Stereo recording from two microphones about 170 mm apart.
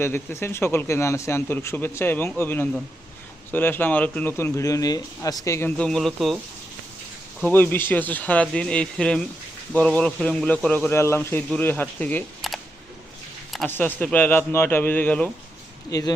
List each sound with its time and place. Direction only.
0.0 s speech: 15° left (ahead or behind)
7.4 s speech: 10° left (ahead or behind)
13.7 s speech: 10° left (ahead or behind)
15.9 s speech: 20° left (ahead or behind)